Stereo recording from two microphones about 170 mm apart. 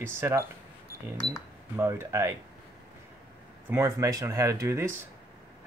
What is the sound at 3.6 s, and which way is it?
Speech, 15° right (ahead or behind).